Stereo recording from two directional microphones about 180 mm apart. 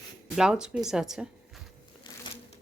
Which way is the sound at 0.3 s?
5° right (ahead or behind).